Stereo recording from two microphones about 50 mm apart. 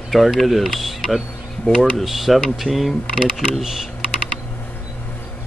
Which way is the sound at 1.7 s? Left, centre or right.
Left.